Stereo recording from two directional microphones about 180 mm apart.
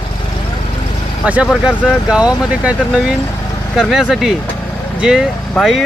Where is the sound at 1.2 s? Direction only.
5° right (ahead or behind).